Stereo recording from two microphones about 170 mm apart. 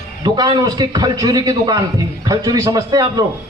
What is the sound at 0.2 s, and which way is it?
A man's voice, 25° right (ahead or behind).